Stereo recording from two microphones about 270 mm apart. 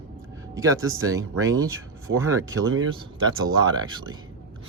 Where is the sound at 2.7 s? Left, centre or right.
Right.